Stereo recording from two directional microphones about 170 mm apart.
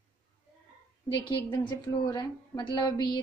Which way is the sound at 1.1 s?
25° left (ahead or behind).